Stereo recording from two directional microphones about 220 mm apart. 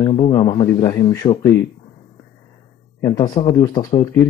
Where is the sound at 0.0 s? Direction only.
25° left (ahead or behind).